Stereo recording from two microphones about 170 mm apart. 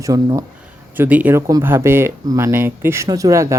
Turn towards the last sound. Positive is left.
turn(degrees=-20)  # may be behind; listen again after turning